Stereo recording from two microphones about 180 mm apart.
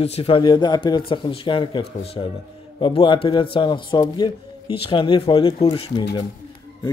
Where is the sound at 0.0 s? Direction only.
35° left (ahead or behind).